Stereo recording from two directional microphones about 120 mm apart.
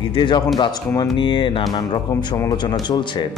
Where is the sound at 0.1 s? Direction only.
40° left (ahead or behind).